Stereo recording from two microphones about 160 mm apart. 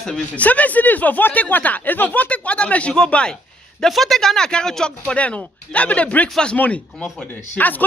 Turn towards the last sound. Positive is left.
turn(degrees=10)  # may be behind; listen again after turning